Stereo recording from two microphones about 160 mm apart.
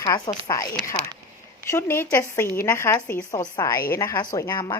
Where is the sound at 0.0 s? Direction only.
20° left (ahead or behind).